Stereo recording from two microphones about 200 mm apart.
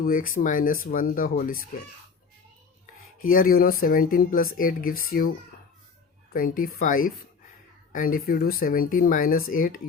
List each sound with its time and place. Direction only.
0.0 s speech: 45° left (ahead or behind)
2.8 s speech: 45° left (ahead or behind)
6.3 s speech: 45° left (ahead or behind)